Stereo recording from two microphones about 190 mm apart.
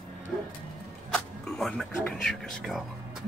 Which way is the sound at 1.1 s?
5° left (ahead or behind).